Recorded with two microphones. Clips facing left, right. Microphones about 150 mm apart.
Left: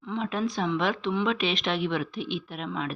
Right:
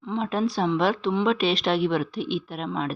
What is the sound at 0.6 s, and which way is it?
Speech, 35° right (ahead or behind).